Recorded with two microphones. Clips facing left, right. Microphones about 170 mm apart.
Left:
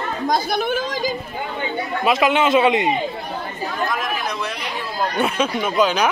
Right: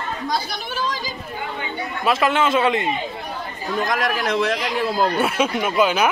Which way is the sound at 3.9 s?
90° right.